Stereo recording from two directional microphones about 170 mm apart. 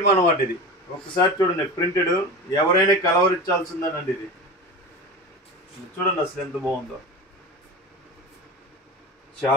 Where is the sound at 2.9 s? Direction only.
20° left (ahead or behind).